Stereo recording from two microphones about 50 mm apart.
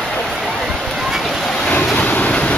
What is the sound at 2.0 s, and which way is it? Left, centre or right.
Train, left.